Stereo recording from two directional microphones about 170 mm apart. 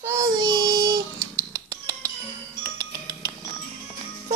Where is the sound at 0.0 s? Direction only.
15° right (ahead or behind).